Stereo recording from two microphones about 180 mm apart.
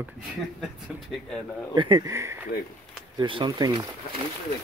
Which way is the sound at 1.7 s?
25° right (ahead or behind).